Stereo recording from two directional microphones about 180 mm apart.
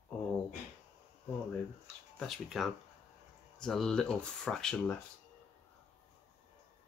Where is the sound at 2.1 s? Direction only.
Centre (ahead or behind).